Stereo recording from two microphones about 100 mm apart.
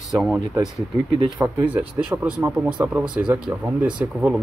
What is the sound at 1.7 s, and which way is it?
Speech, 15° right (ahead or behind).